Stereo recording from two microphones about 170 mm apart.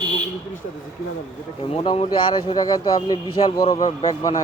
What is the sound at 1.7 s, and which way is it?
Speech, 35° left (ahead or behind).